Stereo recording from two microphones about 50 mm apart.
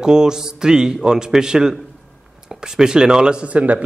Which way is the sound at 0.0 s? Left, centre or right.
Centre.